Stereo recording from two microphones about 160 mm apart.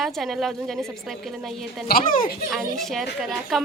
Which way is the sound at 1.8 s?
65° left (ahead or behind).